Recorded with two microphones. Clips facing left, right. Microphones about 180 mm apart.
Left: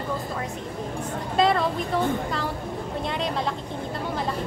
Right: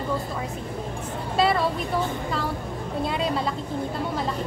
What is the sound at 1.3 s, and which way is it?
Speech, 5° right (ahead or behind).